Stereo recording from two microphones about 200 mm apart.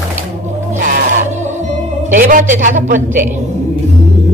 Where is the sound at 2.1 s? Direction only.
40° right (ahead or behind).